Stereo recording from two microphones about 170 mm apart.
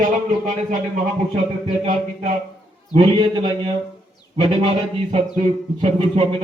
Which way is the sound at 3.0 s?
25° right (ahead or behind).